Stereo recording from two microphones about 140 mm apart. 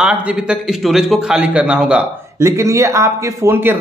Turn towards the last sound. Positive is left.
turn(degrees=-15)  # may be behind; listen again after turning